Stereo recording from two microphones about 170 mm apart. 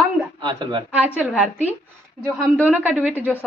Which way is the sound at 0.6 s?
25° right (ahead or behind).